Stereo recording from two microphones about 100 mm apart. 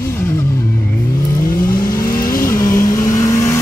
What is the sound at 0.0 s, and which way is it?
Music, 25° left (ahead or behind).